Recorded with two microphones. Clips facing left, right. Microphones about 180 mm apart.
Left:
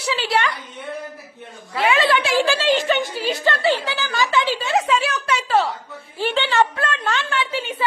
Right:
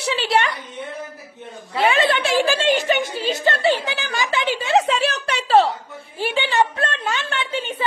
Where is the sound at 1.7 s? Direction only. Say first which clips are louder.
Even; 25° right (ahead or behind).